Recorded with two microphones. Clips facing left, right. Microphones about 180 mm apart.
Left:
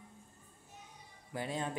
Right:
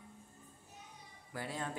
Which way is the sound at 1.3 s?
20° left (ahead or behind).